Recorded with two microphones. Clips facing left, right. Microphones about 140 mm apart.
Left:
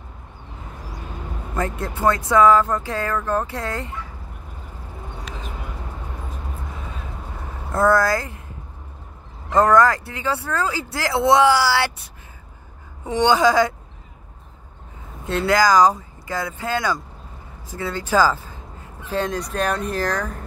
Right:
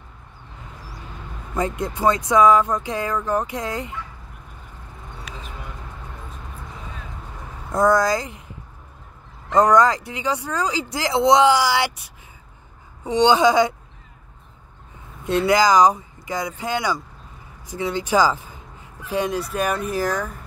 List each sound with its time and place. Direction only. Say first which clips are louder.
2.0 s speech: even; 15° right (ahead or behind)
7.7 s speech: even; 15° right (ahead or behind)
9.6 s a woman's voice: even; 20° right (ahead or behind)
15.2 s speech: right 1 dB; 15° right (ahead or behind)